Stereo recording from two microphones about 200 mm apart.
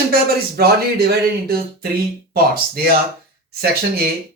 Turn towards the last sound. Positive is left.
turn(degrees=-50)  # may be behind; listen again after turning